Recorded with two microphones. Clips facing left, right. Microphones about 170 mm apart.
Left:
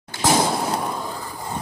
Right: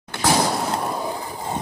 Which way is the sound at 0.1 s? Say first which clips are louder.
Even; 65° right (ahead or behind).